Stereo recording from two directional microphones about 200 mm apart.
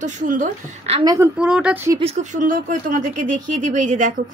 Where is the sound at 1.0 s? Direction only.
15° right (ahead or behind).